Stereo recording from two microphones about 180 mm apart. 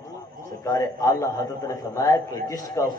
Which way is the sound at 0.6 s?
20° left (ahead or behind).